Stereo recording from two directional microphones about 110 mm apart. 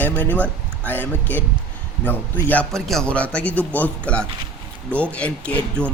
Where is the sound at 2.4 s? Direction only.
10° left (ahead or behind).